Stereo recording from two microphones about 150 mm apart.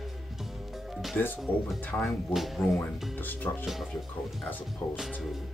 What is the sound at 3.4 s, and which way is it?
Speech, 15° left (ahead or behind).